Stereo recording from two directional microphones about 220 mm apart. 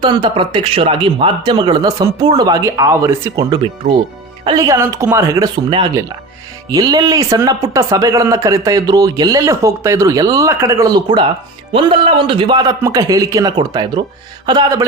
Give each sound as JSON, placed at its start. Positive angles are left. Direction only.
{"t": 0.0, "sound": "speech", "side_deg": -20}